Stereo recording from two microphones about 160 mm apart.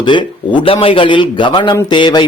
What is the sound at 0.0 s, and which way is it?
Speech, 30° left (ahead or behind).